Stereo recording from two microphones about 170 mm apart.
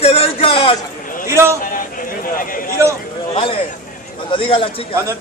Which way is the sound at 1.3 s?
15° right (ahead or behind).